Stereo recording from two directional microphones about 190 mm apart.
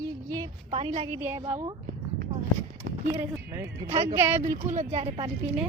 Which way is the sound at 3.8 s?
35° right (ahead or behind).